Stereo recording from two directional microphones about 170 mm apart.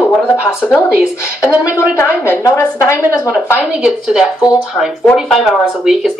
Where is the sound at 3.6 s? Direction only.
5° right (ahead or behind).